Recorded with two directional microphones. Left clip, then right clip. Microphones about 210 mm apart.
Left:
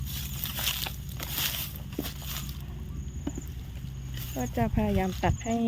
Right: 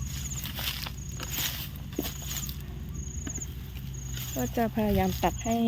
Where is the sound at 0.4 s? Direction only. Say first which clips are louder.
Left 3 dB; 30° left (ahead or behind).